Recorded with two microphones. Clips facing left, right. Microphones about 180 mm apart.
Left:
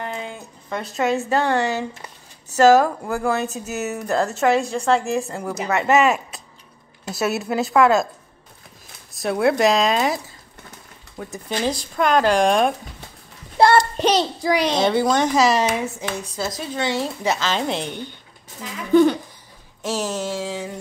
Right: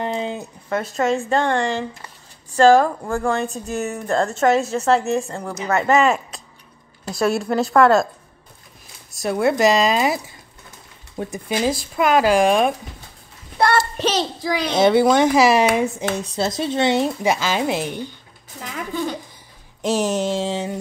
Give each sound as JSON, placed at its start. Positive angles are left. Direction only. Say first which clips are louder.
{"t": 0.0, "sound": "a sound", "louder": "right 6 dB", "side_deg": -25}
{"t": 0.7, "sound": "speech", "louder": "right 2 dB", "side_deg": 0}
{"t": 9.1, "sound": "speech", "louder": "even", "side_deg": 0}
{"t": 11.3, "sound": "a woman's voice", "louder": "right 2 dB", "side_deg": -10}
{"t": 13.6, "sound": "child singing", "louder": "left 3 dB", "side_deg": 25}
{"t": 14.8, "sound": "a woman's voice", "louder": "right 4 dB", "side_deg": -10}
{"t": 19.8, "sound": "a sound", "louder": "right 5 dB", "side_deg": -15}